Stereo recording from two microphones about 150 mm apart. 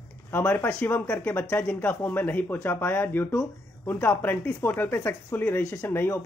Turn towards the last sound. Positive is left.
turn(degrees=15)  # may be behind; listen again after turning